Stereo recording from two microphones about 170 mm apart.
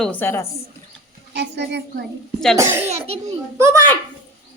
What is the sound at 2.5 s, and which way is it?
Speech, 15° right (ahead or behind).